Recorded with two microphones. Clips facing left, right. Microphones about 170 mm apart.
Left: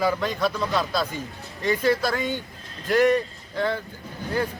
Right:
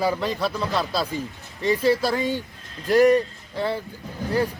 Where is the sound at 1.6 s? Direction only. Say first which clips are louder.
Right 2 dB; 30° right (ahead or behind).